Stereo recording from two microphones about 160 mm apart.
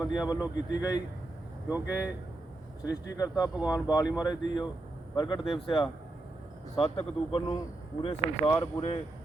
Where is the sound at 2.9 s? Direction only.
20° left (ahead or behind).